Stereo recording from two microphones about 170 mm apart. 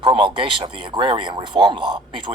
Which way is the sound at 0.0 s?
30° right (ahead or behind).